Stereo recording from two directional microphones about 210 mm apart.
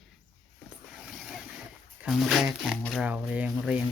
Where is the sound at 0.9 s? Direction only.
Centre (ahead or behind).